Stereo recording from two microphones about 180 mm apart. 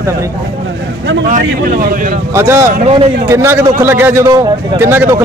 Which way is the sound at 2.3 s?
15° right (ahead or behind).